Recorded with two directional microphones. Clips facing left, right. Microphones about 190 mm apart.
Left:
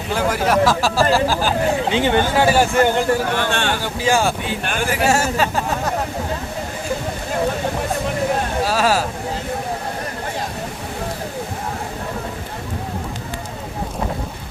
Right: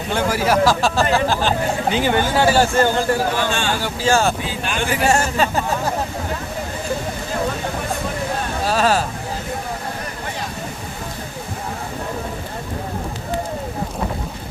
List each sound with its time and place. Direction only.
0.1 s speech: centre (ahead or behind)
1.9 s speech: 25° left (ahead or behind)
3.3 s speech: 60° left (ahead or behind)
4.0 s speech: 15° left (ahead or behind)
4.4 s speech: 55° left (ahead or behind)
4.8 s speech: 5° left (ahead or behind)
8.6 s speech: 5° left (ahead or behind)